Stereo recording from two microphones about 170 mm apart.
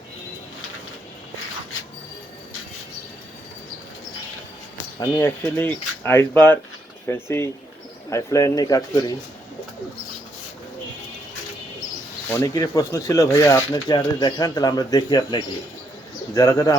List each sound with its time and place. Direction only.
4.9 s speech: 15° left (ahead or behind)
12.3 s speech: 20° left (ahead or behind)